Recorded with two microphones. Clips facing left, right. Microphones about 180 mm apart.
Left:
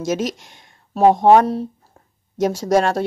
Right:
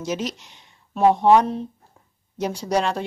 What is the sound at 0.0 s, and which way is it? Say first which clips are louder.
Speech: left 5 dB; 45° left (ahead or behind).